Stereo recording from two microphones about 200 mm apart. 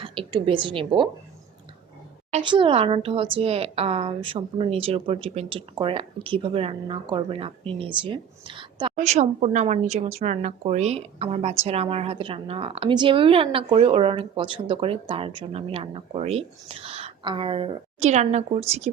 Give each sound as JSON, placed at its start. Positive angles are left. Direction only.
{"t": 0.0, "sound": "a woman's voice", "side_deg": -25}
{"t": 2.3, "sound": "a woman's voice", "side_deg": -25}
{"t": 9.0, "sound": "a woman's voice", "side_deg": -35}